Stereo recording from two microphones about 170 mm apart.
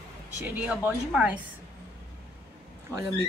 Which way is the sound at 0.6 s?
5° right (ahead or behind).